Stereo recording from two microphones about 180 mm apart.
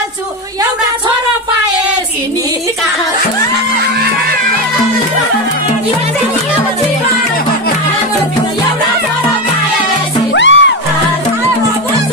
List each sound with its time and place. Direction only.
10.3 s music: 90° left